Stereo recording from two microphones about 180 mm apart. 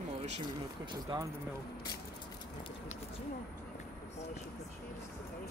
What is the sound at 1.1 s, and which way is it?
Speech, 25° right (ahead or behind).